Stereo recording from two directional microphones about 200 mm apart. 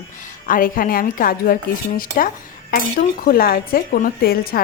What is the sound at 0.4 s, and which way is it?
Speech, 45° left (ahead or behind).